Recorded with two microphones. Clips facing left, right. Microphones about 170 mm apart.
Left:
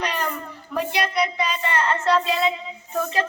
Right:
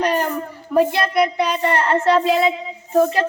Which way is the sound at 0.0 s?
45° right (ahead or behind).